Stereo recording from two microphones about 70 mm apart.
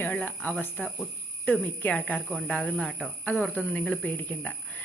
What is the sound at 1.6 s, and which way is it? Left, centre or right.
Speech, left.